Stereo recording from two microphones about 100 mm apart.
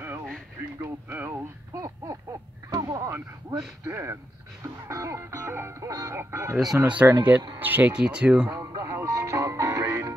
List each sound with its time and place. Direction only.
1.0 s speech: 20° right (ahead or behind)
1.3 s a sound: 35° right (ahead or behind)
3.4 s speech: 40° right (ahead or behind)
3.9 s speech: 25° right (ahead or behind)
6.8 s speech: 15° right (ahead or behind)
8.5 s music: 30° right (ahead or behind)